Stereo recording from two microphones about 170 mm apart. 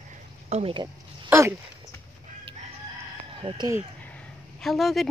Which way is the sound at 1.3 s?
15° right (ahead or behind).